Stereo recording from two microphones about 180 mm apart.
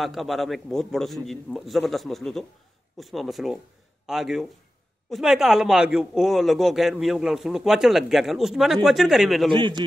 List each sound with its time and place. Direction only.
0.0 s a man's voice: centre (ahead or behind)
9.5 s a man's voice: 25° right (ahead or behind)